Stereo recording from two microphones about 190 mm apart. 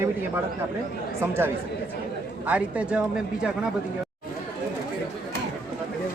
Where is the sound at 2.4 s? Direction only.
5° right (ahead or behind).